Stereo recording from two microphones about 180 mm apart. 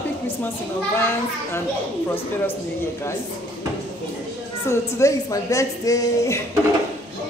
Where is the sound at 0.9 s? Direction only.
15° left (ahead or behind).